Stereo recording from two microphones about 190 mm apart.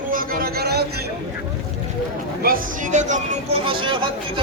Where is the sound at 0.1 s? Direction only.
50° right (ahead or behind).